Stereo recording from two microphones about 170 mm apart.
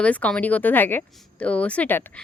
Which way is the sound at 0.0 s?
10° left (ahead or behind).